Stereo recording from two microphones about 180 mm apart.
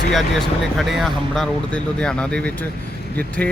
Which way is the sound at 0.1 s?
Centre (ahead or behind).